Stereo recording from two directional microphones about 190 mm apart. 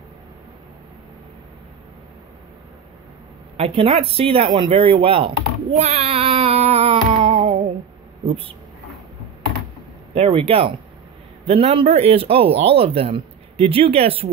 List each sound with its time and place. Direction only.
3.5 s speech: 30° right (ahead or behind)
4.6 s a sound: 30° right (ahead or behind)
10.1 s speech: 30° right (ahead or behind)